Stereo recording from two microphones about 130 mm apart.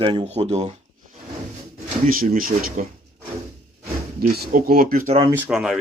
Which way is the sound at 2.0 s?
90° right.